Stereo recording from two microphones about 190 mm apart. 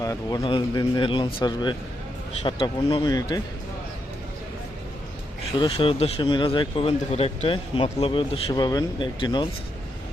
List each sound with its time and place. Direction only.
0.0 s speech: 20° left (ahead or behind)
5.5 s speech: 30° left (ahead or behind)